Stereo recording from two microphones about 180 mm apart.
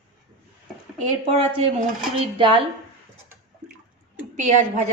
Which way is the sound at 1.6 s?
30° right (ahead or behind).